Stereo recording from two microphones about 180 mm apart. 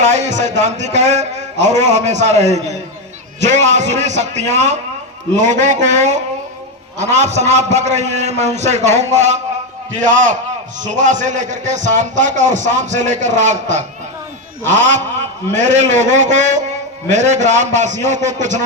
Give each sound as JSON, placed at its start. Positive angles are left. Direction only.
{"t": 0.0, "sound": "a man's voice", "side_deg": -40}